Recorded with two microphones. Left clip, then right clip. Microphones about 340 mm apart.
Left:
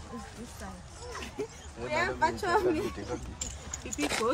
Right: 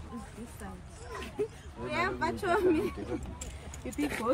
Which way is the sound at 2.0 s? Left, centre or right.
Centre.